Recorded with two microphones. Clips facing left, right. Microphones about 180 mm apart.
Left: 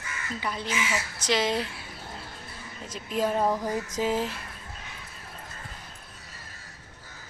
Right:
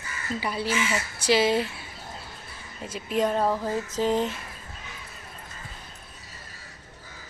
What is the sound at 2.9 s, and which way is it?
Speech, centre (ahead or behind).